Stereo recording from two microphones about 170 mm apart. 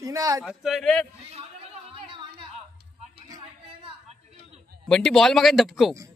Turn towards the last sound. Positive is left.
turn(degrees=0)  # may be behind; listen again after turning